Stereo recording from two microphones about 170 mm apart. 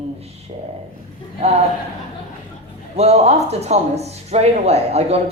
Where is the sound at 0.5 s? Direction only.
40° right (ahead or behind).